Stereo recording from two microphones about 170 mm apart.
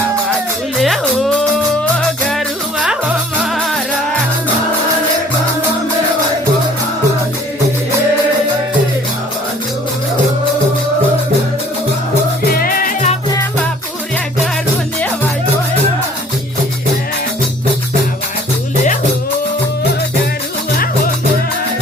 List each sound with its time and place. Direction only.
0.8 s music: centre (ahead or behind)
12.5 s music: 60° left (ahead or behind)